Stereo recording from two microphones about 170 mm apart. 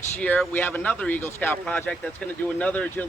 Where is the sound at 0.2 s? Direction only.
10° left (ahead or behind).